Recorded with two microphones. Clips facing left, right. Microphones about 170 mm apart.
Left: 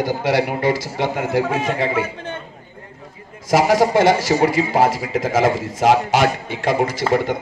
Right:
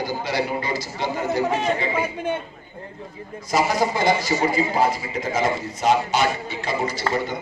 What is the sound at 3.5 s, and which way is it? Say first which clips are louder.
A man's voice: left 6 dB; 90° left.